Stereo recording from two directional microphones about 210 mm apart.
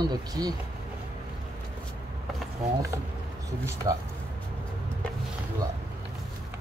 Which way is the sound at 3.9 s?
15° right (ahead or behind).